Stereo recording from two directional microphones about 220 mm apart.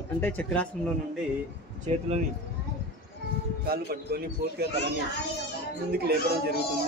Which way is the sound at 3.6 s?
45° right (ahead or behind).